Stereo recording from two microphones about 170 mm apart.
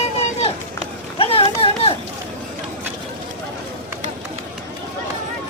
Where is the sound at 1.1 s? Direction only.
35° left (ahead or behind).